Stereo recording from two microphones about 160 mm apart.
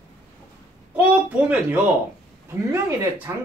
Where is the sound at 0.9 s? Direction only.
10° right (ahead or behind).